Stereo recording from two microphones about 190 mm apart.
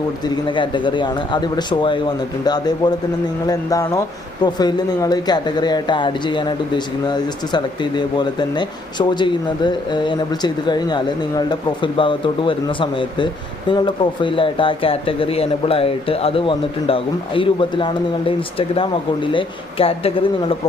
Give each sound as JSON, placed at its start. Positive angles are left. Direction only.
{"t": 0.4, "sound": "speech", "side_deg": 25}